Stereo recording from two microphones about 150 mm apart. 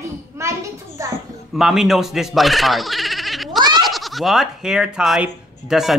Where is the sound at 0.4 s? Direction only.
20° right (ahead or behind).